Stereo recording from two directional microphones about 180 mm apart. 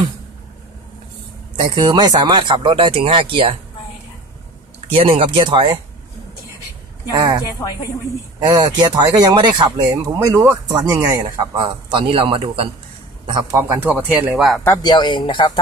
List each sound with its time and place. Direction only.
1.6 s speech: 25° right (ahead or behind)
4.9 s speech: 30° right (ahead or behind)
7.1 s speech: 20° right (ahead or behind)
13.6 s speech: 10° right (ahead or behind)
14.8 s speech: 25° left (ahead or behind)